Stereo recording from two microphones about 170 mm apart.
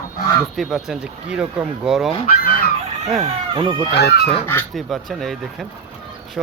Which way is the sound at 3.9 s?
75° left (ahead or behind).